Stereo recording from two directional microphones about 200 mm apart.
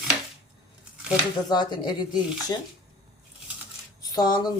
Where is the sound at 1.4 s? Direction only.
20° left (ahead or behind).